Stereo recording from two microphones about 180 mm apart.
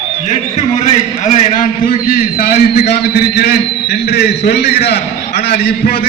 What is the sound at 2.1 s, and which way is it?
A man's voice, 55° left (ahead or behind).